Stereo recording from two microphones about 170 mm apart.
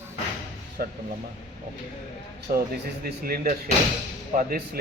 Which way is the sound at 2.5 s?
60° right (ahead or behind).